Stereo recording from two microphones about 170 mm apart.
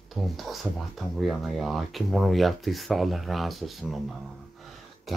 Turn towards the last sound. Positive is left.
turn(degrees=0)  # may be behind; listen again after turning